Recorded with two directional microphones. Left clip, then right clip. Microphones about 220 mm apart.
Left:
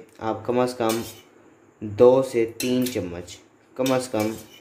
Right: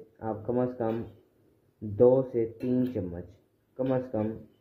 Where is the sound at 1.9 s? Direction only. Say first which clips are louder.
Left 6 dB; 15° left (ahead or behind).